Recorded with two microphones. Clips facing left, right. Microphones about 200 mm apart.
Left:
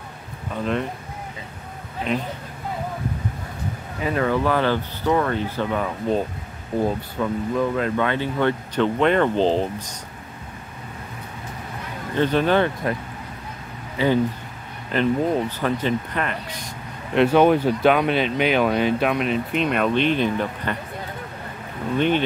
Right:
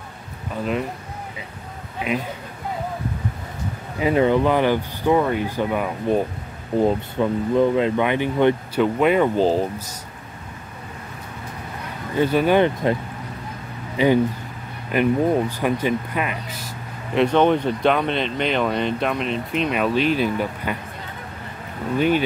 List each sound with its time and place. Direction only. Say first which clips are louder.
2.1 s speech: even; 10° right (ahead or behind)
4.0 s speech: right 4 dB; 20° right (ahead or behind)
12.2 s speech: right 2 dB; 10° right (ahead or behind)
13.9 s speech: right 2 dB; 15° right (ahead or behind)
21.9 s speech: right 1 dB; 5° right (ahead or behind)